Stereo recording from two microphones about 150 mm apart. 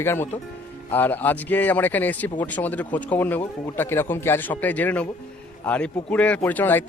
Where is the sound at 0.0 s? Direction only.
15° left (ahead or behind).